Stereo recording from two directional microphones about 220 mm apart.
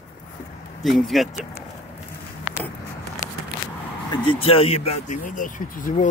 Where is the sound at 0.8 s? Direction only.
Centre (ahead or behind).